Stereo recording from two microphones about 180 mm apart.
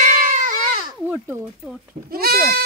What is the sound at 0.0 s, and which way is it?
Cat, 50° right (ahead or behind).